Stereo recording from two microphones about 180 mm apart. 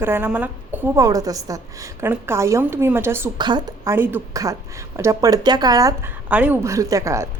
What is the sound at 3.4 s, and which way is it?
Speech, 25° right (ahead or behind).